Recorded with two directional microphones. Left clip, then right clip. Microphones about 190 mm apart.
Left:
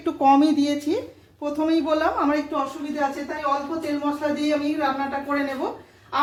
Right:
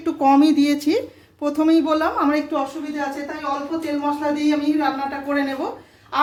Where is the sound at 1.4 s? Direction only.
30° right (ahead or behind).